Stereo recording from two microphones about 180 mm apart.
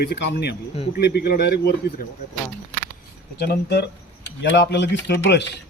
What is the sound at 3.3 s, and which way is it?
Speech, 65° left (ahead or behind).